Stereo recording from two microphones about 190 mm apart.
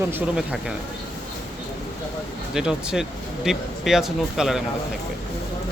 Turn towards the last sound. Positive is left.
turn(degrees=0)  # may be behind; listen again after turning